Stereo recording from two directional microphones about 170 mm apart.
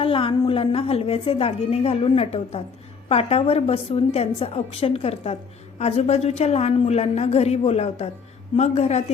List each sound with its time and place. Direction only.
0.0 s a woman's voice: 30° left (ahead or behind)